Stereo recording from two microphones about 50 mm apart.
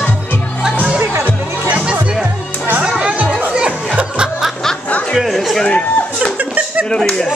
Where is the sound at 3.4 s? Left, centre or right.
Right.